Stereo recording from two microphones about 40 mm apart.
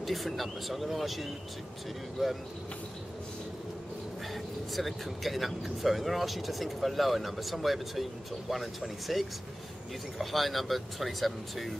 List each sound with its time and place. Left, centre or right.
0.0 s speech: centre
4.3 s speech: centre